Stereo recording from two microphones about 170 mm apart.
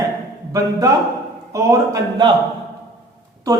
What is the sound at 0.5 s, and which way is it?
A man's voice, 20° right (ahead or behind).